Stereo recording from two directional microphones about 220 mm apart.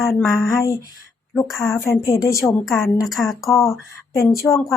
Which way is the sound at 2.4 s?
Centre (ahead or behind).